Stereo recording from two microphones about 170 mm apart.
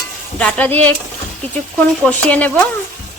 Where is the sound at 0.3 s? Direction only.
5° left (ahead or behind).